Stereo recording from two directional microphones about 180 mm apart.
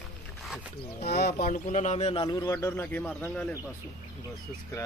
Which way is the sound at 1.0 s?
60° left (ahead or behind).